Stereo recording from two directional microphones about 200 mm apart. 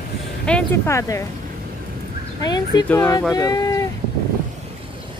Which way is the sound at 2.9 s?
10° left (ahead or behind).